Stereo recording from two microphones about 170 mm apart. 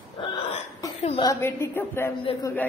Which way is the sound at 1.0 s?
35° left (ahead or behind).